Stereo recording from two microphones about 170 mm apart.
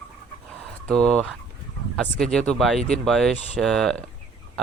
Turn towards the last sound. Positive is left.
turn(degrees=5)  # may be behind; listen again after turning